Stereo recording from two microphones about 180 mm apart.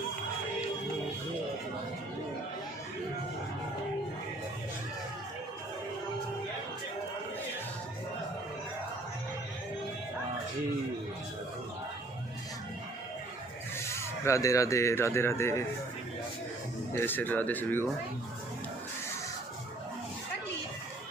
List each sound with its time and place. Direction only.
13.9 s speech: 15° left (ahead or behind)
16.9 s speech: 10° left (ahead or behind)